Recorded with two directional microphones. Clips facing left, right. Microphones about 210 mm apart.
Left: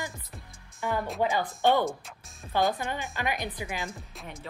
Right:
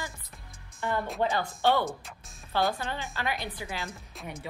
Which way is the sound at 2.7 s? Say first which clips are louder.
Left 2 dB; 15° left (ahead or behind).